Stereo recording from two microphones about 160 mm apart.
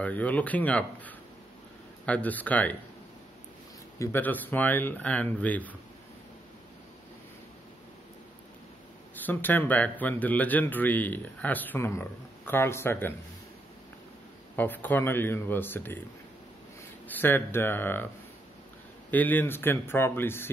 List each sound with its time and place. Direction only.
0.0 s a man's voice: 10° left (ahead or behind)
4.0 s a man's voice: 10° left (ahead or behind)
9.2 s a man's voice: 10° left (ahead or behind)
14.5 s a man's voice: 10° left (ahead or behind)
17.1 s a man's voice: 10° left (ahead or behind)
19.0 s a man's voice: 10° left (ahead or behind)